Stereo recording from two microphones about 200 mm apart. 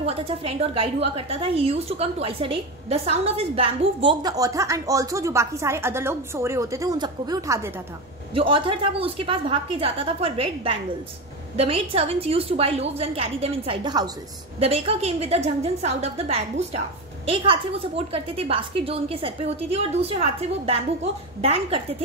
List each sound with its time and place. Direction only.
0.0 s a woman's voice: 30° right (ahead or behind)
8.4 s a woman's voice: 25° right (ahead or behind)